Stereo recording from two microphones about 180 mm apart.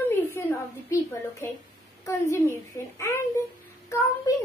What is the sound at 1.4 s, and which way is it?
A woman's voice, 15° left (ahead or behind).